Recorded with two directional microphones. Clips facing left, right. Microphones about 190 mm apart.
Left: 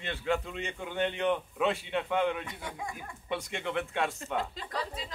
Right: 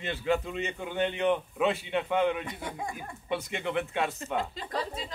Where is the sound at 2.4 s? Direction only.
35° right (ahead or behind).